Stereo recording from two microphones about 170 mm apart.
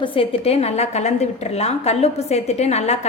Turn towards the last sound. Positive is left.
turn(degrees=40)  # may be behind; listen again after turning